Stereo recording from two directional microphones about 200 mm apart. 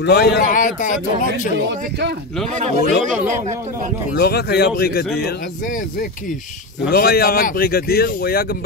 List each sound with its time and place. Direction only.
0.0 s speech: 55° left (ahead or behind)
1.7 s speech: 55° right (ahead or behind)
2.4 s a man's voice: 35° right (ahead or behind)
4.2 s speech: 55° left (ahead or behind)